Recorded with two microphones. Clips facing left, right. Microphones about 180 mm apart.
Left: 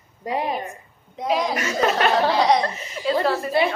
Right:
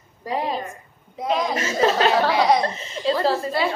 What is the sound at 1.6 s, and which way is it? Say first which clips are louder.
Speech: right 1 dB; 30° right (ahead or behind).